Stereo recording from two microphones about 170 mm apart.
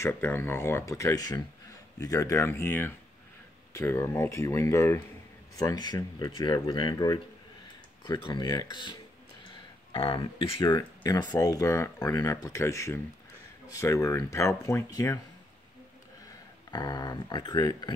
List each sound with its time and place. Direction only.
0.0 s speech: 15° left (ahead or behind)
9.9 s speech: 30° left (ahead or behind)
16.7 s speech: 25° left (ahead or behind)